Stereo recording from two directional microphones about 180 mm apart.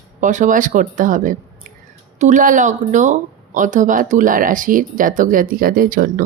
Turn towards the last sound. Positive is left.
turn(degrees=-50)  # may be behind; listen again after turning